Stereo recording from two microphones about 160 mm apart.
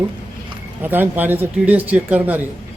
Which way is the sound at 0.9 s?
10° right (ahead or behind).